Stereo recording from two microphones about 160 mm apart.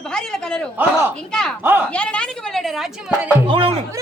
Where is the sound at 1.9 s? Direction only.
5° left (ahead or behind).